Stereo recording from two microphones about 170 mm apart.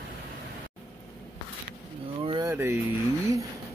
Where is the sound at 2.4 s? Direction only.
15° right (ahead or behind).